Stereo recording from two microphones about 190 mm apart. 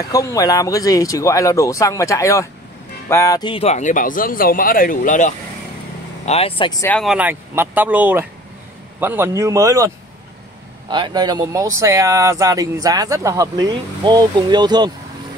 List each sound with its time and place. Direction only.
0.0 s speech: 20° left (ahead or behind); by 5.3 s 45° left (ahead or behind)
6.2 s speech: 30° left (ahead or behind)
6.7 s speech: 15° left (ahead or behind)
7.0 s speech: 5° right (ahead or behind); by 14.9 s 20° right (ahead or behind)